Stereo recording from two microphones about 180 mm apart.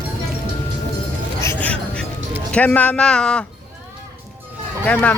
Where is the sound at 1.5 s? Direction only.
10° left (ahead or behind).